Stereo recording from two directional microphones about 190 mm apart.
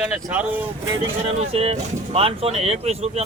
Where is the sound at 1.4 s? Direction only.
30° right (ahead or behind).